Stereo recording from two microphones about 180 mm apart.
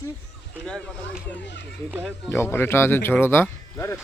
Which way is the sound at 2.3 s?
15° left (ahead or behind).